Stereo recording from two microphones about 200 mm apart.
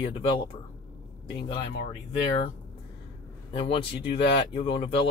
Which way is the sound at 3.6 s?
25° left (ahead or behind).